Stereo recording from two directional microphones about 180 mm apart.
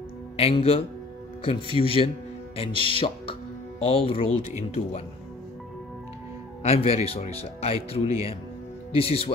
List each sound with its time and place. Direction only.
0.4 s speech: 35° left (ahead or behind)
6.6 s speech: 35° left (ahead or behind)